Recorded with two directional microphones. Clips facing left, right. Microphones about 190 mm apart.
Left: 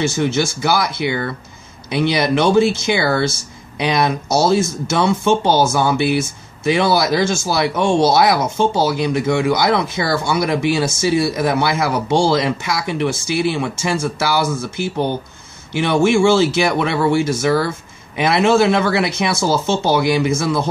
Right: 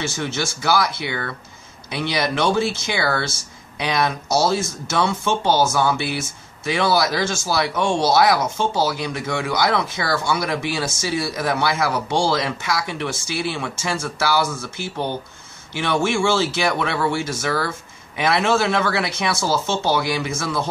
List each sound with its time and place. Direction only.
0.2 s speech: 15° left (ahead or behind)